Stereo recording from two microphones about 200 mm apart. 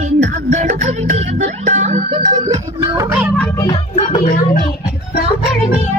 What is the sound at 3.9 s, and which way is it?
Music, 30° left (ahead or behind).